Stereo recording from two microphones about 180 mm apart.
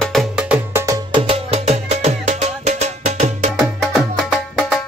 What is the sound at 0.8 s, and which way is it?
Music, 20° right (ahead or behind).